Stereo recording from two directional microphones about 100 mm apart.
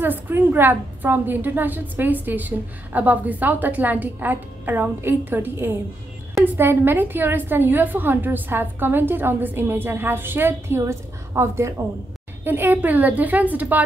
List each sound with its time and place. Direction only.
0.0 s a woman's voice: 20° right (ahead or behind)